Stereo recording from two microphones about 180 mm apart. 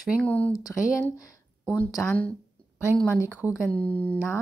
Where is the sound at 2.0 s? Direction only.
10° left (ahead or behind).